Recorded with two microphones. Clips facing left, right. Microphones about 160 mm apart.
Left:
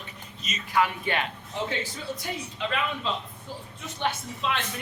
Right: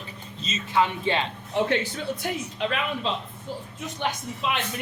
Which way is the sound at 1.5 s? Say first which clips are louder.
Right 7 dB; 65° right (ahead or behind).